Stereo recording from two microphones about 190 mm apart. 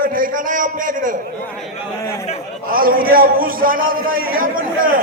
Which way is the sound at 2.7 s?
50° right (ahead or behind).